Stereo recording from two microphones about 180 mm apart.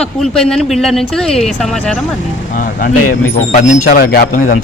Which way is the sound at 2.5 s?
50° left (ahead or behind).